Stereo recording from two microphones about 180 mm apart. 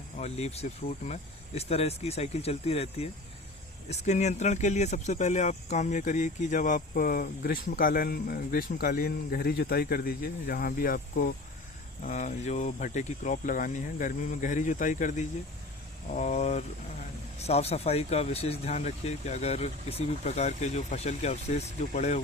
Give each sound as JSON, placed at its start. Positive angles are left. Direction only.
{"t": 0.2, "sound": "speech", "side_deg": 35}